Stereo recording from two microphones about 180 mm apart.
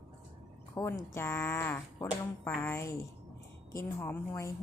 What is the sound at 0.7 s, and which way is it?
Speech, 15° left (ahead or behind).